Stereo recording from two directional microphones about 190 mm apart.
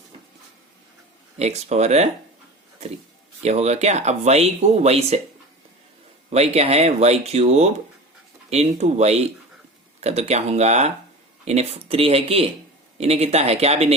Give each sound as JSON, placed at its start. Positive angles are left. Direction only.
{"t": 1.4, "sound": "speech", "side_deg": -35}
{"t": 3.4, "sound": "speech", "side_deg": -35}
{"t": 6.3, "sound": "speech", "side_deg": -35}